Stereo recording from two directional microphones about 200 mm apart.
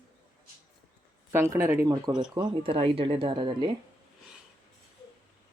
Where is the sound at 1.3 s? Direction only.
10° right (ahead or behind).